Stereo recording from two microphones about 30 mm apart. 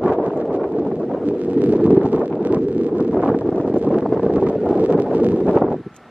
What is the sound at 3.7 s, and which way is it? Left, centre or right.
Wind noise, right.